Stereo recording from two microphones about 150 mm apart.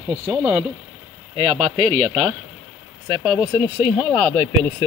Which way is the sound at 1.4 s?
50° right (ahead or behind).